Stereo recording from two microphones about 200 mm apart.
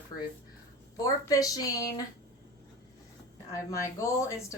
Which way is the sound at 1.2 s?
20° left (ahead or behind).